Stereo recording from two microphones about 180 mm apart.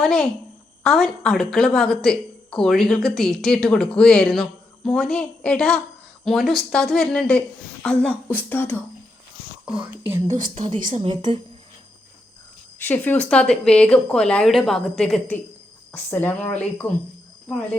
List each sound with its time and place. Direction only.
0.0 s a woman's voice: 5° left (ahead or behind)
9.7 s speech: 30° right (ahead or behind)
10.2 s speech: 45° right (ahead or behind)
11.0 s speech: 30° right (ahead or behind)
12.8 s a woman's voice: 10° left (ahead or behind)